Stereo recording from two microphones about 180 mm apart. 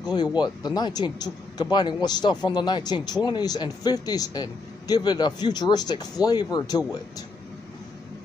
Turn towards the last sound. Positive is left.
turn(degrees=20)  # may be behind; listen again after turning